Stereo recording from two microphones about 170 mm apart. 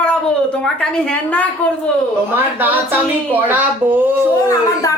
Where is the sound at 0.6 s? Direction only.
5° left (ahead or behind).